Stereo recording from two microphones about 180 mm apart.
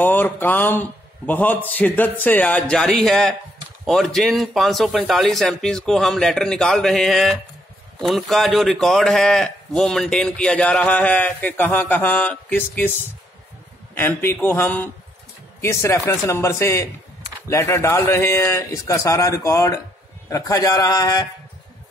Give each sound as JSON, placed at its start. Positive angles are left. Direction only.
{"t": 0.0, "sound": "a man's voice", "side_deg": 10}
{"t": 13.9, "sound": "a man's voice", "side_deg": 10}